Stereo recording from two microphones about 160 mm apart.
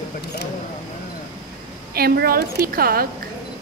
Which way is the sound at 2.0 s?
75° right (ahead or behind).